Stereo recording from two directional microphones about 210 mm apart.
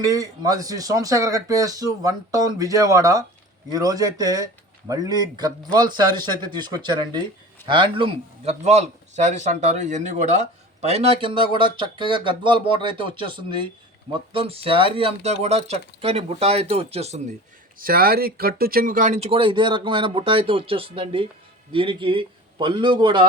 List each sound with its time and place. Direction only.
0.0 s a man's voice: 15° right (ahead or behind); by 17.3 s 30° right (ahead or behind)
17.7 s a man's voice: 45° right (ahead or behind); by 23.2 s 20° right (ahead or behind)